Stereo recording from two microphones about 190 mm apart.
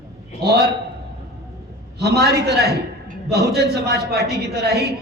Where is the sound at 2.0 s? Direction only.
55° right (ahead or behind).